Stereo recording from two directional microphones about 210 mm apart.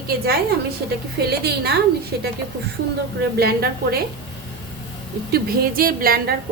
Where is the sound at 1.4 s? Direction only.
50° right (ahead or behind).